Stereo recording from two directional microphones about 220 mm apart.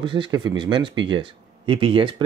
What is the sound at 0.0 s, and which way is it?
Speech, 20° right (ahead or behind).